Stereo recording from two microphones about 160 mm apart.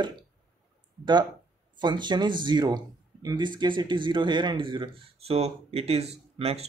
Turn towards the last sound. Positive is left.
turn(degrees=-40)  # may be behind; listen again after turning